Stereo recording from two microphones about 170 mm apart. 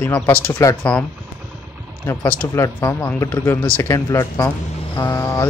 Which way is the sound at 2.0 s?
10° left (ahead or behind).